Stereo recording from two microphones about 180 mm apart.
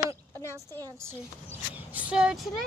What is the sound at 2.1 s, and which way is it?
Speech, 5° right (ahead or behind).